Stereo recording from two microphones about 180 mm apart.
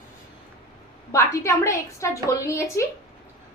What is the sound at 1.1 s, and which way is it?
A woman's voice, 15° left (ahead or behind).